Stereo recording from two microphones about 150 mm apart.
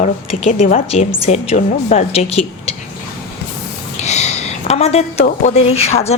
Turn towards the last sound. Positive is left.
turn(degrees=45)  # may be behind; listen again after turning